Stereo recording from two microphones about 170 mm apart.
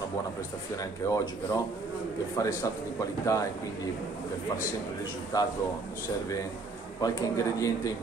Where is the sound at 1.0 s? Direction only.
15° left (ahead or behind).